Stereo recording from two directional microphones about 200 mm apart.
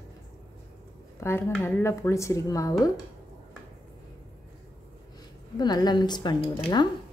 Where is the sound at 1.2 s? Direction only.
10° left (ahead or behind).